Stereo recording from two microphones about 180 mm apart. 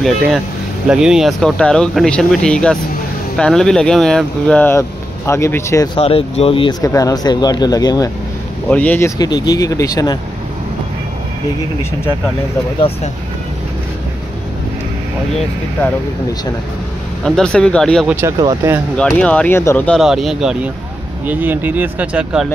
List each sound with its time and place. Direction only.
0.8 s speech: 5° right (ahead or behind); by 5.9 s 15° left (ahead or behind)
5.9 s speech: 30° left (ahead or behind)
6.8 s speech: 20° left (ahead or behind)
8.6 s speech: 10° left (ahead or behind)
9.2 s speech: 20° left (ahead or behind)
17.2 s speech: 5° left (ahead or behind)
18.0 s speech: 10° right (ahead or behind)
18.4 s speech: 25° right (ahead or behind)
18.9 s speech: 5° left (ahead or behind)
20.0 s speech: centre (ahead or behind)